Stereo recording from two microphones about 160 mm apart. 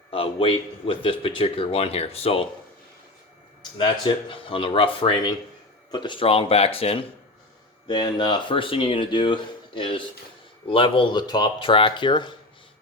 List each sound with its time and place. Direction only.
0.1 s speech: 35° left (ahead or behind)
3.6 s speech: 30° left (ahead or behind)
7.9 s speech: 25° left (ahead or behind)